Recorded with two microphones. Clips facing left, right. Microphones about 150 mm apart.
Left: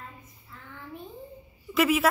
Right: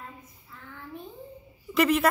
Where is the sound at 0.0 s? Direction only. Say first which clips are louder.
Right 1 dB; centre (ahead or behind).